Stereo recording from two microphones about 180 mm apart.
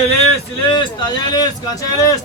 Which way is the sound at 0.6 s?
25° left (ahead or behind).